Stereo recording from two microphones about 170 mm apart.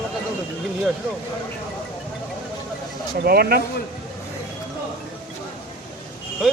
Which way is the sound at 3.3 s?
65° right (ahead or behind).